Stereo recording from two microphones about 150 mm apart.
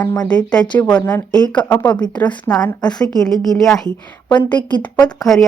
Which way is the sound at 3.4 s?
Centre (ahead or behind).